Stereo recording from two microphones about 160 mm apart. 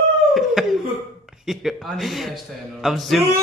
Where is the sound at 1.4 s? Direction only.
Centre (ahead or behind).